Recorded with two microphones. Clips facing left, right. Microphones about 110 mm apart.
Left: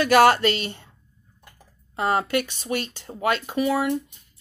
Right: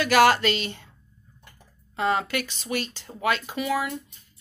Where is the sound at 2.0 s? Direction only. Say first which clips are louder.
Left 2 dB; 50° left (ahead or behind).